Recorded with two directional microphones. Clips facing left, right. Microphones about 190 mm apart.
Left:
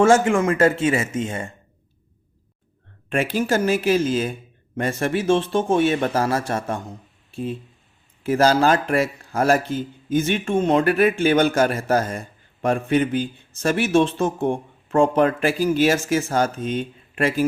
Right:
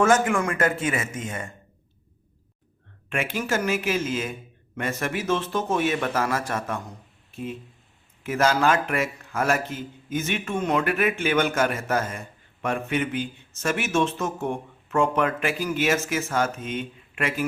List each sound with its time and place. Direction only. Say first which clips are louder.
0.0 s speech: left 5 dB; 25° left (ahead or behind)
3.1 s a man's voice: left 6 dB; 35° left (ahead or behind)